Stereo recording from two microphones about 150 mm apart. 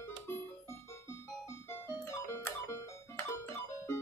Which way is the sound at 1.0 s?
15° left (ahead or behind).